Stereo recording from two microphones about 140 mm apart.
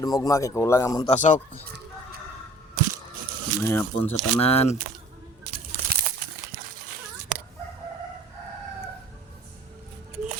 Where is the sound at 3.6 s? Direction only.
15° left (ahead or behind).